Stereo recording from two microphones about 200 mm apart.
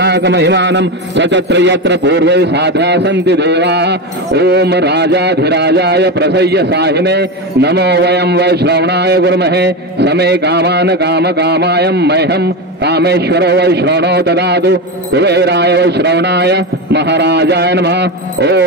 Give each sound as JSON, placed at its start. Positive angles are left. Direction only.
{"t": 0.0, "sound": "a man's voice", "side_deg": -60}